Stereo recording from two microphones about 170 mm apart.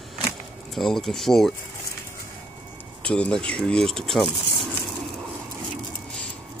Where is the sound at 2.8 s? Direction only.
5° left (ahead or behind).